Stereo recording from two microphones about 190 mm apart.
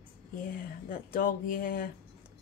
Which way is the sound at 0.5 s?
50° left (ahead or behind).